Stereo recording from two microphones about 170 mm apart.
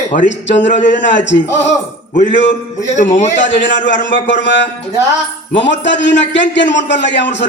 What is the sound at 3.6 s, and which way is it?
A man's voice, 90° left.